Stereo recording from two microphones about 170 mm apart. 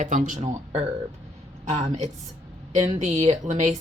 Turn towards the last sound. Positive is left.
turn(degrees=-45)  # may be behind; listen again after turning